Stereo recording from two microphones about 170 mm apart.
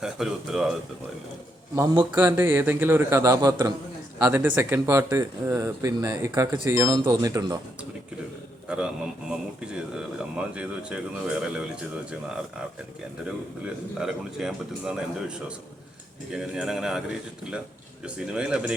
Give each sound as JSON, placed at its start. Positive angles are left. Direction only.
{"t": 0.0, "sound": "speech", "side_deg": -5}
{"t": 1.7, "sound": "speech", "side_deg": -15}
{"t": 8.6, "sound": "a man's voice", "side_deg": -5}
{"t": 10.3, "sound": "speech", "side_deg": -5}
{"t": 14.0, "sound": "speech", "side_deg": 0}